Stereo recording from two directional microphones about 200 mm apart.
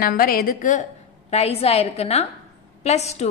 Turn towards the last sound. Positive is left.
turn(degrees=35)  # may be behind; listen again after turning